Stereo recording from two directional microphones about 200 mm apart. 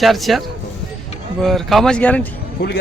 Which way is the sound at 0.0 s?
Centre (ahead or behind).